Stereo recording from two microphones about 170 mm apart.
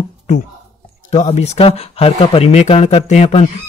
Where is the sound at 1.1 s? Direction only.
40° left (ahead or behind).